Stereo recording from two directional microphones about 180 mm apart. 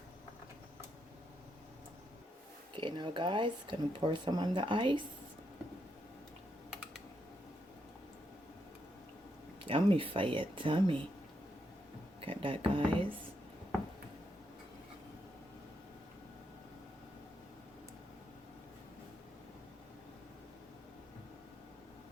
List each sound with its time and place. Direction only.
2.7 s speech: 25° right (ahead or behind)
9.6 s speech: 30° right (ahead or behind)
12.2 s speech: 30° right (ahead or behind)